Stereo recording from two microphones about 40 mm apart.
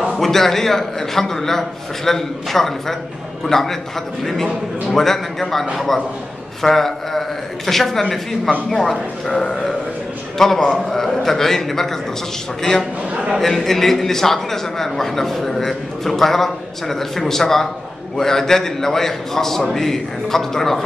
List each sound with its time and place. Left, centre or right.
0.0 s a man's voice: centre
9.3 s speech: left
10.3 s a man's voice: centre
13.4 s a man's voice: centre